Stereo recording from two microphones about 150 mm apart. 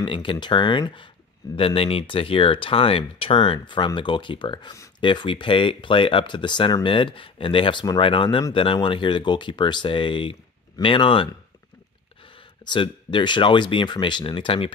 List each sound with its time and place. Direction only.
0.0 s speech: 35° left (ahead or behind)
12.6 s speech: 30° left (ahead or behind)